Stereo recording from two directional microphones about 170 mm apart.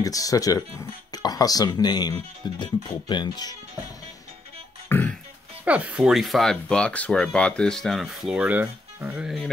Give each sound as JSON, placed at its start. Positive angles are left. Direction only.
{"t": 0.0, "sound": "speech", "side_deg": 20}
{"t": 4.8, "sound": "music", "side_deg": 10}
{"t": 5.7, "sound": "speech", "side_deg": -10}